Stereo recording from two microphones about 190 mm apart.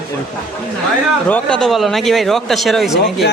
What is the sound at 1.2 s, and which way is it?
Speech, 5° left (ahead or behind).